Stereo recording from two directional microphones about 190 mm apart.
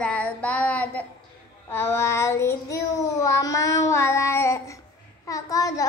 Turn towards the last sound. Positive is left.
turn(degrees=15)  # may be behind; listen again after turning